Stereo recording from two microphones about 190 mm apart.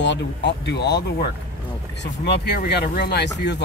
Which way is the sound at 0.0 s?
65° left (ahead or behind).